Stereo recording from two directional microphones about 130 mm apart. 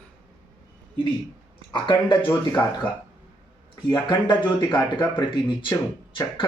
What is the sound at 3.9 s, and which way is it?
Speech, 35° left (ahead or behind).